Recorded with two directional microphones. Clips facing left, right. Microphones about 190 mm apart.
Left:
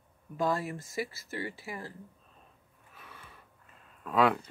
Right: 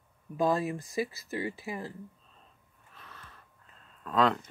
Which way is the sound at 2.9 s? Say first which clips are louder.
Even; 10° left (ahead or behind).